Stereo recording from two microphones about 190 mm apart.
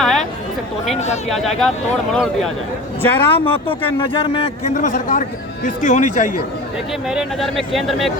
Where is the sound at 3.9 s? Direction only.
25° left (ahead or behind).